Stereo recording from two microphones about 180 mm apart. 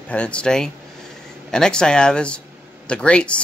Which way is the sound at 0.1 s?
5° left (ahead or behind).